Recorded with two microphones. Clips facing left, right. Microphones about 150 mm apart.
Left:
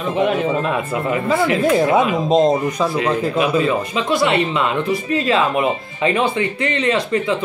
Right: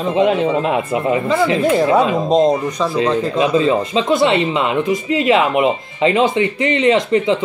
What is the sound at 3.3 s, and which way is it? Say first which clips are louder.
Speech: right 4 dB; 30° right (ahead or behind).